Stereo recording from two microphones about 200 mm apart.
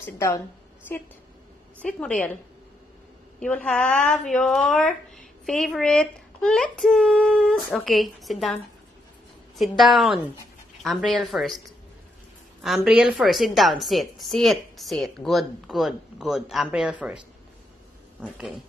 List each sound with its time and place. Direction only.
0.0 s a woman's voice: 15° left (ahead or behind)
1.8 s a woman's voice: 5° left (ahead or behind)
3.3 s a woman's voice: 5° left (ahead or behind)
12.6 s a woman's voice: centre (ahead or behind)